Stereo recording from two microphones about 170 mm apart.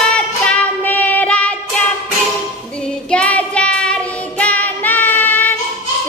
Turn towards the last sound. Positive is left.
turn(degrees=10)  # may be behind; listen again after turning